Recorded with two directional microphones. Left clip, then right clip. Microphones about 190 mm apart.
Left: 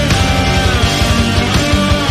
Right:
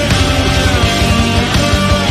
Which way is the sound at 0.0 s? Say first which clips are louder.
Right 1 dB; centre (ahead or behind).